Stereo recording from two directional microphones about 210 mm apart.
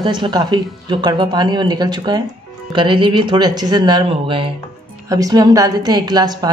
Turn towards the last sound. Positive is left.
turn(degrees=-20)  # may be behind; listen again after turning